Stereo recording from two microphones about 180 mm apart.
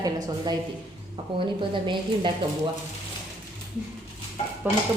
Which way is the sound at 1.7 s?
25° right (ahead or behind).